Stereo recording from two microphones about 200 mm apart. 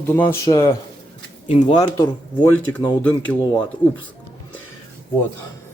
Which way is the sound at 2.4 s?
10° left (ahead or behind).